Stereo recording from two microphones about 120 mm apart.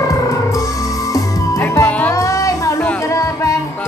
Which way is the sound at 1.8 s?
15° left (ahead or behind).